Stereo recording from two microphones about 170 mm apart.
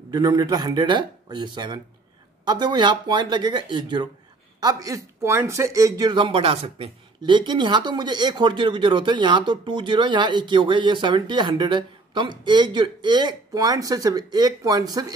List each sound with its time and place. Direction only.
0.1 s speech: 25° right (ahead or behind)